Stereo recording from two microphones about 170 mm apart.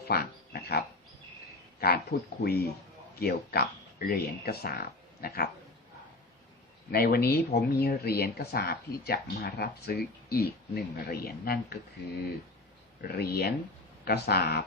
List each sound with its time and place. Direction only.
0.1 s speech: 65° left (ahead or behind)
6.9 s speech: 65° left (ahead or behind)
13.0 s speech: 70° left (ahead or behind)